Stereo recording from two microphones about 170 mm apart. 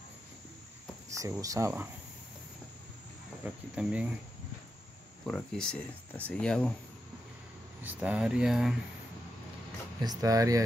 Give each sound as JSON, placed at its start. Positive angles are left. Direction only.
{"t": 1.1, "sound": "speech", "side_deg": -20}
{"t": 3.4, "sound": "speech", "side_deg": -5}
{"t": 5.2, "sound": "speech", "side_deg": 5}
{"t": 7.8, "sound": "speech", "side_deg": -10}
{"t": 10.0, "sound": "speech", "side_deg": -20}